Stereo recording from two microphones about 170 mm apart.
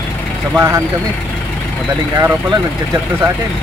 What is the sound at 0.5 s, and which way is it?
Speech, 15° right (ahead or behind).